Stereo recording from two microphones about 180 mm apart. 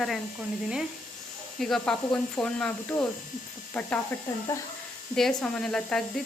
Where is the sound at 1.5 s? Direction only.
Centre (ahead or behind).